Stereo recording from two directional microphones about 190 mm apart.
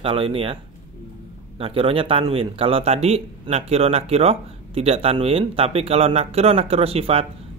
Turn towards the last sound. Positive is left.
turn(degrees=-30)  # may be behind; listen again after turning